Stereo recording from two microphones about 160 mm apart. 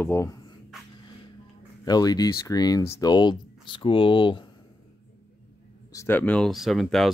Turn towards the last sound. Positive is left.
turn(degrees=0)  # may be behind; listen again after turning